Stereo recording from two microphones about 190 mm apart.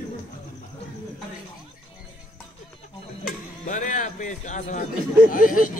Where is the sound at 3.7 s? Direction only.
40° left (ahead or behind).